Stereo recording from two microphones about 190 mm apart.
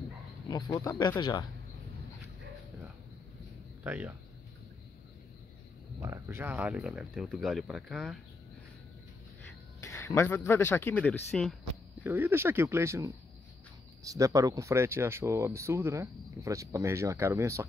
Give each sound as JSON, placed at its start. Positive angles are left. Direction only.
{"t": 0.5, "sound": "speech", "side_deg": 20}
{"t": 3.8, "sound": "speech", "side_deg": -10}
{"t": 5.9, "sound": "speech", "side_deg": -15}
{"t": 9.8, "sound": "speech", "side_deg": 15}
{"t": 12.0, "sound": "speech", "side_deg": -10}